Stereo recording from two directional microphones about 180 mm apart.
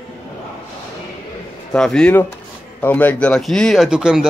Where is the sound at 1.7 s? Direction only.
5° left (ahead or behind).